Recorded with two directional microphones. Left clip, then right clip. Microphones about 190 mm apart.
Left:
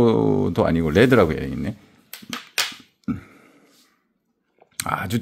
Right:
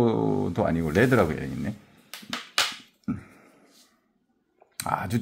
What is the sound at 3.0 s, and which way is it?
Finger snapping, 35° left (ahead or behind).